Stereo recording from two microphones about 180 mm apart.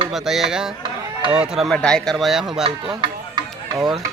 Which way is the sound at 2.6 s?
25° right (ahead or behind).